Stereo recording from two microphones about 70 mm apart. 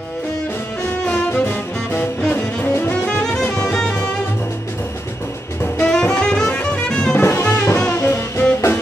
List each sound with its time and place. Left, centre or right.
1.5 s music: left
3.5 s music: centre
5.9 s music: centre
7.2 s music: left